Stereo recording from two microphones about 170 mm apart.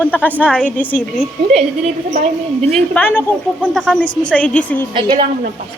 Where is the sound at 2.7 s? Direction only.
10° left (ahead or behind).